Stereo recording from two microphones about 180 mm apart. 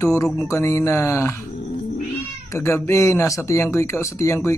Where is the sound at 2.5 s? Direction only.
15° left (ahead or behind).